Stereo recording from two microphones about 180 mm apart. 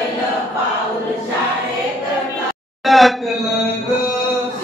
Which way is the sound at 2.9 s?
Centre (ahead or behind).